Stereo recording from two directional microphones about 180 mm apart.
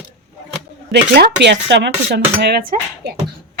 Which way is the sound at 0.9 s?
70° right (ahead or behind).